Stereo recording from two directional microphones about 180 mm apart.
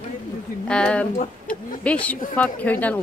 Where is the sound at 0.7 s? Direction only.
5° left (ahead or behind).